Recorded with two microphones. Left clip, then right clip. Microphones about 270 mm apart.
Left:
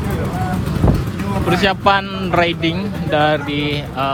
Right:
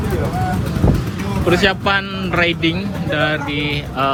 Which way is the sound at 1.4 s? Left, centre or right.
Centre.